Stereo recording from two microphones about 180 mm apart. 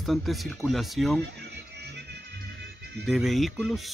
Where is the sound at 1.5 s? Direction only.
70° right (ahead or behind).